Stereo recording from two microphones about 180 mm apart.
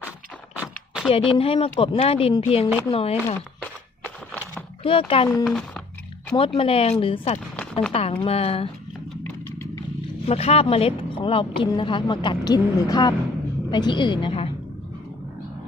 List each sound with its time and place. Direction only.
0.6 s a sound: 5° right (ahead or behind)
1.1 s speech: 30° left (ahead or behind)
4.0 s a sound: 10° left (ahead or behind)
4.8 s a woman's voice: 30° left (ahead or behind)
5.4 s speech: centre (ahead or behind)
6.3 s speech: 30° left (ahead or behind)
10.2 s a woman's voice: 35° left (ahead or behind)